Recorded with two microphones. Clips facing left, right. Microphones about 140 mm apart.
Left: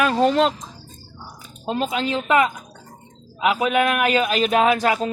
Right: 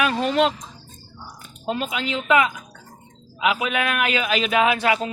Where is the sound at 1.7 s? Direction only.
35° left (ahead or behind).